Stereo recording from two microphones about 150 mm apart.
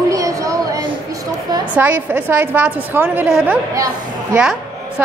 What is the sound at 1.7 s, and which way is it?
A woman's voice, 10° right (ahead or behind).